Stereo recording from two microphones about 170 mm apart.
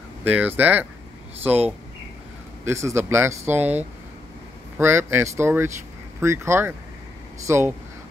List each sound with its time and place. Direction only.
0.2 s speech: 10° right (ahead or behind)
2.6 s speech: 15° right (ahead or behind)
4.7 s speech: 15° right (ahead or behind)